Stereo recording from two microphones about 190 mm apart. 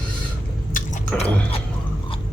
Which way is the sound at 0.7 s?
45° left (ahead or behind).